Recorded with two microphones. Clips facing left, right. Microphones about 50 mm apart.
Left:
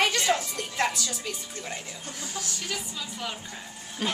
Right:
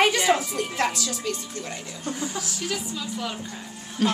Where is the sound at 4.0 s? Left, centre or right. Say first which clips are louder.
Right 7 dB; centre.